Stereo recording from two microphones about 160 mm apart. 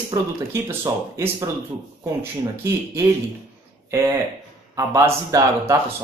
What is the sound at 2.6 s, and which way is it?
Speech, 15° right (ahead or behind).